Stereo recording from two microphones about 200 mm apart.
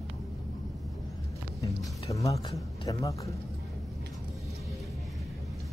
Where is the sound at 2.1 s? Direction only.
15° left (ahead or behind).